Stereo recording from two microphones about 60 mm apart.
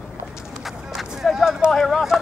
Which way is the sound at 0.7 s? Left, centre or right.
Centre.